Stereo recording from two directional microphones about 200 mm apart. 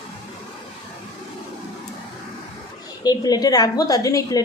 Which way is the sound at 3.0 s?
20° left (ahead or behind).